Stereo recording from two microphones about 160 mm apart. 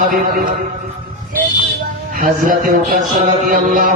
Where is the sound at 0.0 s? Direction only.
60° right (ahead or behind).